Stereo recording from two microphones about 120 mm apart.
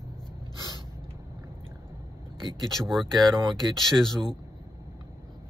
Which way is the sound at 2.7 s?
Centre (ahead or behind).